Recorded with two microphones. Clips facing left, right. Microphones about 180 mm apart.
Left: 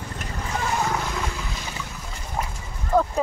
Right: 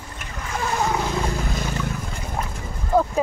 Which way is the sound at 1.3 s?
50° right (ahead or behind).